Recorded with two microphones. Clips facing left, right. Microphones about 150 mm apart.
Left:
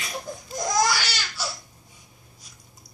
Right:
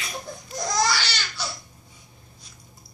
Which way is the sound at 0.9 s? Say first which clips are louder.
Even; 10° left (ahead or behind).